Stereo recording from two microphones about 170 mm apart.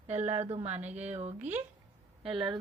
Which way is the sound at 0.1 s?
40° right (ahead or behind).